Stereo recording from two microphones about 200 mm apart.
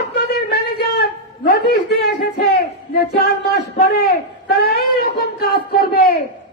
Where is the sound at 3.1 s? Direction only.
50° left (ahead or behind).